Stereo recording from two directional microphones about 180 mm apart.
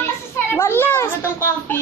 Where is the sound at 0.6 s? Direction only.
15° left (ahead or behind).